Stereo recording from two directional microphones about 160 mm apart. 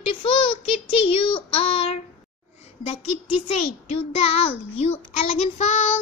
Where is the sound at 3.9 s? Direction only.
40° left (ahead or behind).